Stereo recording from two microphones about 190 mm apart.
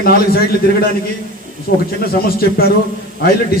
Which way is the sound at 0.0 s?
55° left (ahead or behind).